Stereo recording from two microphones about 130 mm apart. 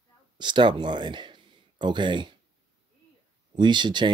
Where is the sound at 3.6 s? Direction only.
35° right (ahead or behind).